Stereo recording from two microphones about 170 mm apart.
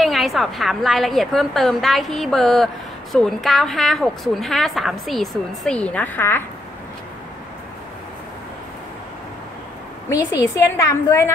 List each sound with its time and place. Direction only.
0.0 s a woman's voice: centre (ahead or behind)
10.0 s a woman's voice: 15° left (ahead or behind)